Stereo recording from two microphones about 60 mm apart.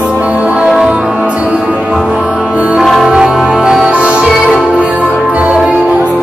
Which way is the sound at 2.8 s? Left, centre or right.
Centre.